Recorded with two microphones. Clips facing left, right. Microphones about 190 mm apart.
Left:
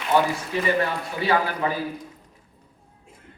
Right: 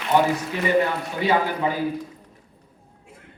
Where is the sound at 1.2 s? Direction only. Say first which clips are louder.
Right 1 dB; 20° right (ahead or behind).